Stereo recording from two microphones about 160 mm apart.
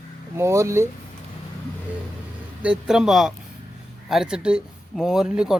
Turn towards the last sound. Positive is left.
turn(degrees=-5)  # may be behind; listen again after turning